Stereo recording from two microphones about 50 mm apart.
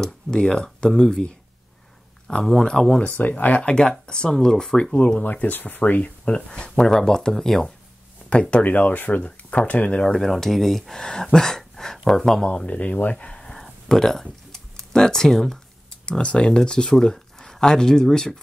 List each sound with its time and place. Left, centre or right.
0.0 s speech: centre
2.2 s speech: centre
3.0 s speech: left
3.6 s speech: centre
4.9 s speech: left; by 7.7 s centre
8.3 s speech: left
8.6 s speech: left
10.1 s speech: centre
11.0 s speech: centre
11.3 s a sound: centre
12.1 s speech: centre
12.4 s speech: left
13.4 s typing: centre
16.1 s speech: left